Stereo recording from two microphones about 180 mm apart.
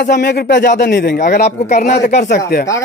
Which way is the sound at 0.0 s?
70° left (ahead or behind).